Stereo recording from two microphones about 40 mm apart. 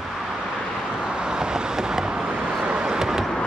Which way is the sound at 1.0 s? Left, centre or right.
Right.